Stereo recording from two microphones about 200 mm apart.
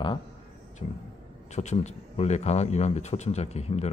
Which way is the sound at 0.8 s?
35° left (ahead or behind).